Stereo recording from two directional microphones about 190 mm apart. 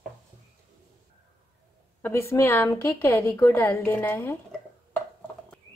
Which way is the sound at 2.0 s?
15° left (ahead or behind).